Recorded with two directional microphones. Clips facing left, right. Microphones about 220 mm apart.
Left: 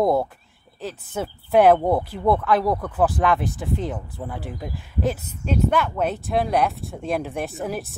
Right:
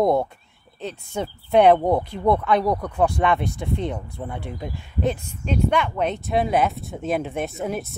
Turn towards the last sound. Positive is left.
turn(degrees=0)  # may be behind; listen again after turning